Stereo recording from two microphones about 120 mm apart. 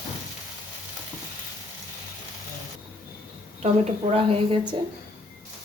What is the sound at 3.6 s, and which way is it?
A woman's voice, 55° right (ahead or behind).